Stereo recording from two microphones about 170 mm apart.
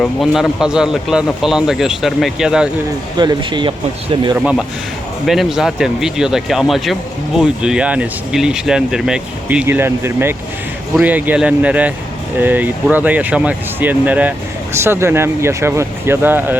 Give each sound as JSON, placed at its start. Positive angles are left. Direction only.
{"t": 0.0, "sound": "speech", "side_deg": 0}
{"t": 3.2, "sound": "speech", "side_deg": -25}
{"t": 5.2, "sound": "speech", "side_deg": 0}